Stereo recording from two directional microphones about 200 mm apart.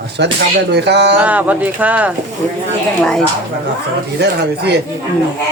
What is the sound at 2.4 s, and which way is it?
Speech, 5° left (ahead or behind).